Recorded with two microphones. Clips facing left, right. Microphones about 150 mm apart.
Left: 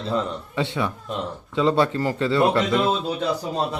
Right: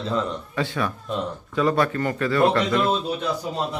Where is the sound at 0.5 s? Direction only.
25° left (ahead or behind).